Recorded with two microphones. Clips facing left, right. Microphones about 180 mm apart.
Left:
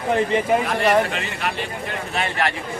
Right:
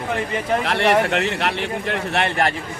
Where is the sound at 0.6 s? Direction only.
75° right (ahead or behind).